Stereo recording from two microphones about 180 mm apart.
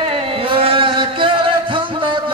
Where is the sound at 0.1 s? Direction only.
30° right (ahead or behind).